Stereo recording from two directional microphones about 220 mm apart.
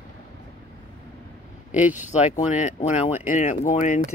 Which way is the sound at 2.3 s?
35° left (ahead or behind).